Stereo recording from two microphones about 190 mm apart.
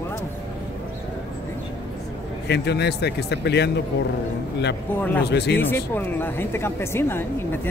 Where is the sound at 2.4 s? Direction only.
60° left (ahead or behind).